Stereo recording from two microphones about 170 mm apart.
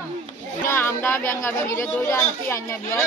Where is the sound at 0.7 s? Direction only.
15° left (ahead or behind).